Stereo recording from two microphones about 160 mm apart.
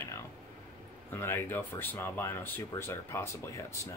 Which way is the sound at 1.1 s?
15° left (ahead or behind).